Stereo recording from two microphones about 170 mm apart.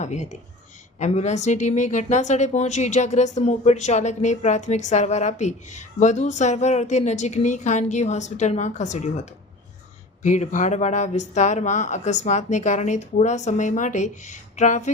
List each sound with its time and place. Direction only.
0.0 s speech: 45° left (ahead or behind)
10.2 s speech: 45° left (ahead or behind)